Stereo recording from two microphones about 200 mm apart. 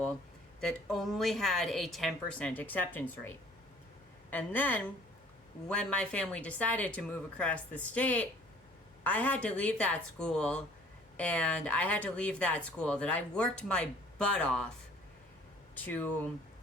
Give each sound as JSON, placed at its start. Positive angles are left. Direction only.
{"t": 0.6, "sound": "speech", "side_deg": 0}
{"t": 15.8, "sound": "speech", "side_deg": 10}